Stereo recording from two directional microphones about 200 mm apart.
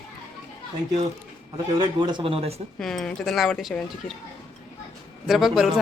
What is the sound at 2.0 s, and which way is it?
Speech, 20° right (ahead or behind).